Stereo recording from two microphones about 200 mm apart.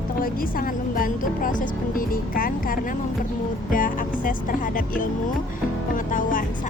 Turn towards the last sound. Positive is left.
turn(degrees=40)  # may be behind; listen again after turning